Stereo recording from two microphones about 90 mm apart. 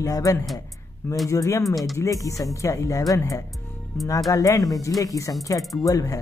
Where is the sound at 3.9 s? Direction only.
30° left (ahead or behind).